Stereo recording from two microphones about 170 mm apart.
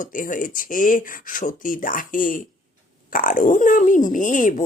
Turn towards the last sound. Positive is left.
turn(degrees=50)  # may be behind; listen again after turning